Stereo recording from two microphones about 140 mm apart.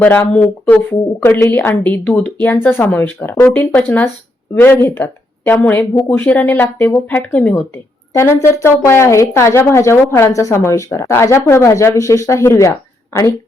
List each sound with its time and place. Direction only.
0.3 s a woman's voice: 10° left (ahead or behind)